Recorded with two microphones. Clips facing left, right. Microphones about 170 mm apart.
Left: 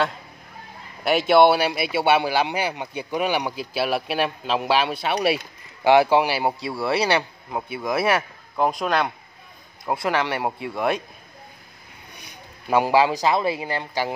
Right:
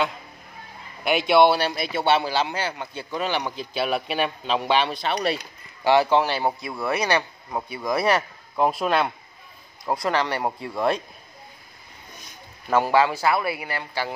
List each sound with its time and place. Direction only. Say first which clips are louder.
1.0 s a man's voice: left 2 dB; centre (ahead or behind)
10.0 s a man's voice: left 1 dB; 5° left (ahead or behind)
12.6 s a man's voice: left 1 dB; 15° left (ahead or behind)